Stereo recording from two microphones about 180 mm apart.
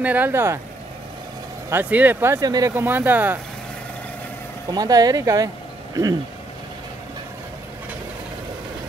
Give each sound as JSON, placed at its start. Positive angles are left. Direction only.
{"t": 0.0, "sound": "speech", "side_deg": -10}
{"t": 1.7, "sound": "speech", "side_deg": -10}
{"t": 4.6, "sound": "speech", "side_deg": -20}